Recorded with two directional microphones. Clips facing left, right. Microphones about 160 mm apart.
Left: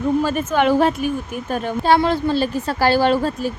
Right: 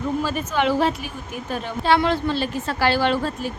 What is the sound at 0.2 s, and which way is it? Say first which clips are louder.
Speech: left 4 dB; 50° left (ahead or behind).